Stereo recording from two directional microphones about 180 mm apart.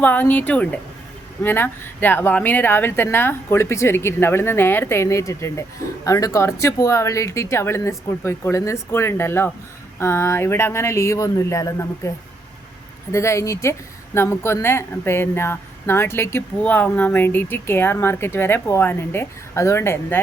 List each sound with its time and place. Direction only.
0.0 s a woman's voice: 10° left (ahead or behind)